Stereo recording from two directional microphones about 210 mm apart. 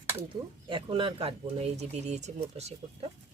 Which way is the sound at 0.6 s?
25° right (ahead or behind).